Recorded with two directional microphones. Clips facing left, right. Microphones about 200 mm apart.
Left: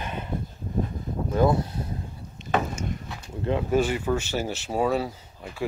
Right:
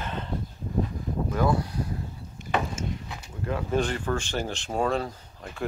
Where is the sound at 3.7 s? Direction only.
10° left (ahead or behind).